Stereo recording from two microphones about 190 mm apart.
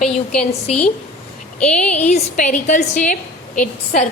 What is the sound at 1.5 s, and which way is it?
Speech, 5° left (ahead or behind).